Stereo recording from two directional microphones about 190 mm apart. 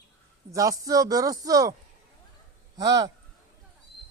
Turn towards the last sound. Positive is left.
turn(degrees=-20)  # may be behind; listen again after turning